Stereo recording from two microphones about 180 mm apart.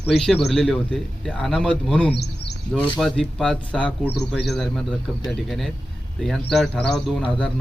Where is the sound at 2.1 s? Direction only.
65° left (ahead or behind).